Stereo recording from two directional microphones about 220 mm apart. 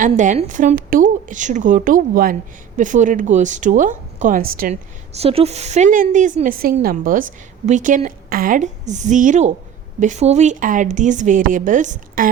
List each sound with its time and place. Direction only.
0.0 s speech: 35° right (ahead or behind)
5.1 s speech: 25° right (ahead or behind)